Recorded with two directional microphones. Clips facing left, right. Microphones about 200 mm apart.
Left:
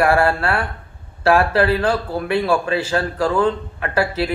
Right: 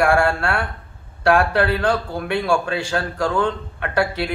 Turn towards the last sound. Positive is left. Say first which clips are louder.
# left 1 dB
turn(degrees=5)  # may be behind; listen again after turning